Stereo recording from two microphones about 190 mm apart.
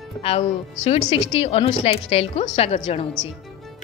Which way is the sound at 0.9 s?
30° left (ahead or behind).